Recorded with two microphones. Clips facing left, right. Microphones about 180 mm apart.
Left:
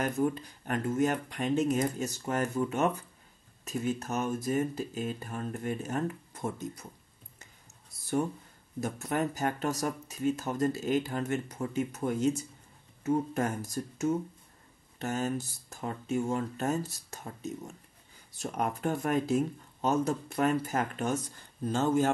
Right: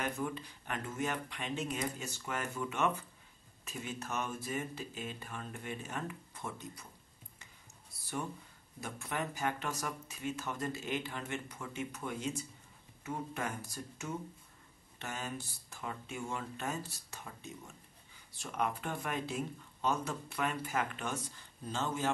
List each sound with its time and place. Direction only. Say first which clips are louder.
0.0 s speech: left 8 dB; 45° left (ahead or behind)
8.8 s speech: left 8 dB; 40° left (ahead or behind)